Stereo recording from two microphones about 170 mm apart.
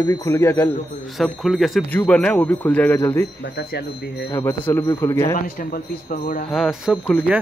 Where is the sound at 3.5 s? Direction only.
75° left (ahead or behind).